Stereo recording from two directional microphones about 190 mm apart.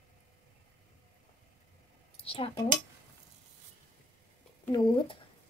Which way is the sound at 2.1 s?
30° left (ahead or behind).